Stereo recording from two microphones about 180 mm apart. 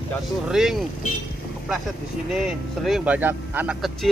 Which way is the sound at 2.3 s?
Centre (ahead or behind).